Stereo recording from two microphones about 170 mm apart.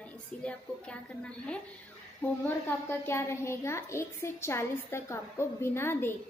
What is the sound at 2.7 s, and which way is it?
A woman's voice, 15° left (ahead or behind).